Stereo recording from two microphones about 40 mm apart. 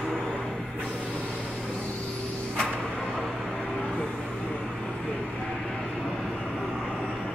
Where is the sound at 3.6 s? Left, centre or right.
Centre.